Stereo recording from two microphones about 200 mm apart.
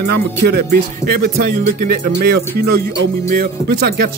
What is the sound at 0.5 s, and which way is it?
Speech, 50° right (ahead or behind).